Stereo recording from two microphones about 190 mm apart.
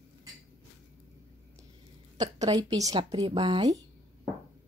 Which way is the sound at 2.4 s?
20° right (ahead or behind).